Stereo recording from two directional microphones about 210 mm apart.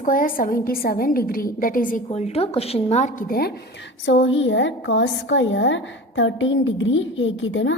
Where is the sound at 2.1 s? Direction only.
30° left (ahead or behind).